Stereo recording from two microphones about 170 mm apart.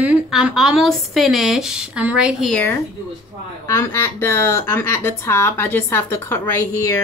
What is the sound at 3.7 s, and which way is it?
Speech, 15° left (ahead or behind).